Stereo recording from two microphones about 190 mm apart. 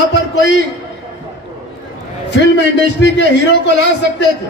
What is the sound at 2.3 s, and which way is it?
A man's voice, 65° left (ahead or behind).